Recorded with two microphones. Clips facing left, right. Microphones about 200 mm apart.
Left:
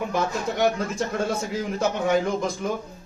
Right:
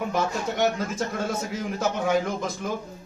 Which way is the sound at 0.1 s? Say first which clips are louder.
Left 1 dB; centre (ahead or behind).